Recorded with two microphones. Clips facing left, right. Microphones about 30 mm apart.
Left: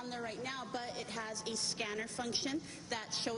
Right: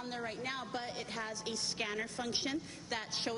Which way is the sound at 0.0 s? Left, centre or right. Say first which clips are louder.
Right 1 dB; centre.